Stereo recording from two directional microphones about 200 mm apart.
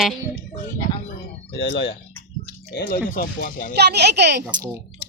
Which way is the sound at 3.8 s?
55° right (ahead or behind).